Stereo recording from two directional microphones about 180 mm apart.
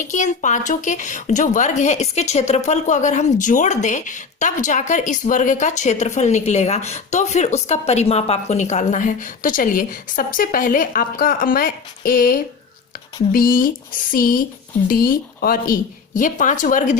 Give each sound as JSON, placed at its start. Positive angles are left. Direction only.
{"t": 0.1, "sound": "a woman's voice", "side_deg": 45}